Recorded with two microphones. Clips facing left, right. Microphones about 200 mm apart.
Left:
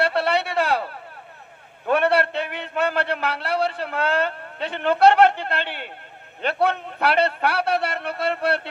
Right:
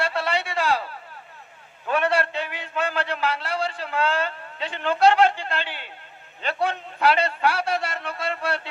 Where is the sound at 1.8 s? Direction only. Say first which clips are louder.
Left 4 dB; 60° left (ahead or behind).